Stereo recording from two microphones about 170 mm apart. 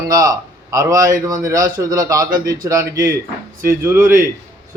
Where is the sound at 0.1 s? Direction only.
20° right (ahead or behind).